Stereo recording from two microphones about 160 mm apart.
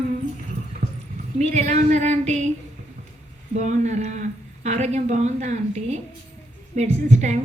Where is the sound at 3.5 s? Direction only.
50° right (ahead or behind).